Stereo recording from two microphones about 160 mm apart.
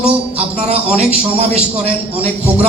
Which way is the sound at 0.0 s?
35° right (ahead or behind).